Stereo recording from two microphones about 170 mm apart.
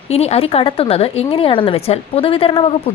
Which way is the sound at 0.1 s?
35° left (ahead or behind).